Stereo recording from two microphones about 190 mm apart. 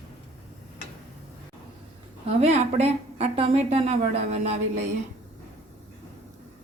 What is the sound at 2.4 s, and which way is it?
A woman's voice, 35° right (ahead or behind).